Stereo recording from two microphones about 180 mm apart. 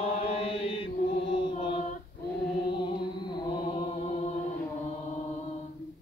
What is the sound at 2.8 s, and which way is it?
Music, 25° left (ahead or behind).